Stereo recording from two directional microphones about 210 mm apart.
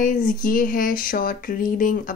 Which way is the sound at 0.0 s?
40° left (ahead or behind).